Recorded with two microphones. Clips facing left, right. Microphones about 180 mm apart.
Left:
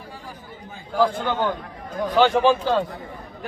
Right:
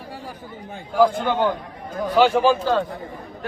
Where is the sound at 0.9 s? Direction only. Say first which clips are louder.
Right 3 dB; 10° right (ahead or behind).